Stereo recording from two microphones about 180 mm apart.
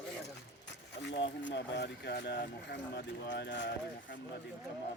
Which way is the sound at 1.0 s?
75° left (ahead or behind).